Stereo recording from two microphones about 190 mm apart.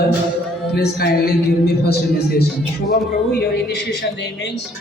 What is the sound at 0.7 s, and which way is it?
Speech, 55° left (ahead or behind).